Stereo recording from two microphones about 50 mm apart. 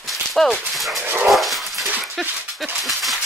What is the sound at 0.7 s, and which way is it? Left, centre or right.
Speech, centre.